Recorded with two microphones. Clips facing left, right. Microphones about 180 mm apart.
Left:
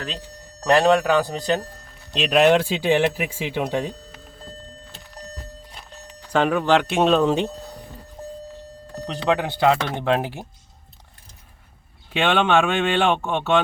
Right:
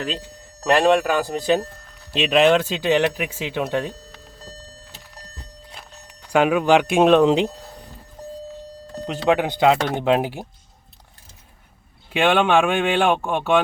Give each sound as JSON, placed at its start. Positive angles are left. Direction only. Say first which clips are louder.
{"t": 0.7, "sound": "a man's voice", "louder": "even", "side_deg": -5}
{"t": 6.1, "sound": "speech", "louder": "right 2 dB", "side_deg": -10}
{"t": 9.3, "sound": "speech", "louder": "right 2 dB", "side_deg": -15}
{"t": 12.1, "sound": "speech", "louder": "right 2 dB", "side_deg": -10}